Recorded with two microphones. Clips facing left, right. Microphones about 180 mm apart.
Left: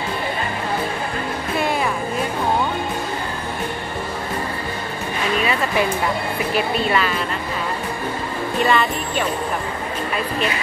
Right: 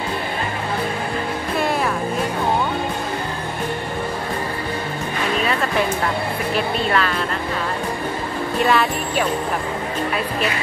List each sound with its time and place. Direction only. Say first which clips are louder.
5.4 s music: even; 5° left (ahead or behind)
6.5 s speech: left 1 dB; 5° left (ahead or behind)
8.6 s speech: right 1 dB; centre (ahead or behind)